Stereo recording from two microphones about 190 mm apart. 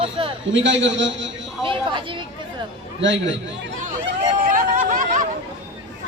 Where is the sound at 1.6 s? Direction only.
25° right (ahead or behind).